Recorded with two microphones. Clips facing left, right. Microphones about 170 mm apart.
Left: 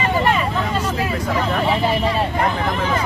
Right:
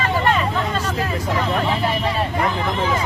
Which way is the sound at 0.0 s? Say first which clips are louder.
Left 1 dB; 10° left (ahead or behind).